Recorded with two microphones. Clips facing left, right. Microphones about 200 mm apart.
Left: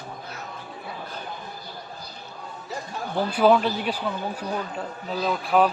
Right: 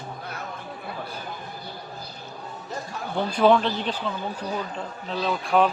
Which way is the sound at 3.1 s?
5° left (ahead or behind).